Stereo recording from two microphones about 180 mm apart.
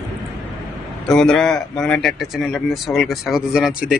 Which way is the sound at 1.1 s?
5° left (ahead or behind).